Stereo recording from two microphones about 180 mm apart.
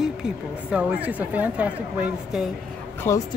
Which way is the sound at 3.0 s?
15° left (ahead or behind).